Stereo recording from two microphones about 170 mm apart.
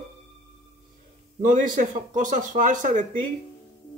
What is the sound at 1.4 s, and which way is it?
A man's voice, 50° right (ahead or behind).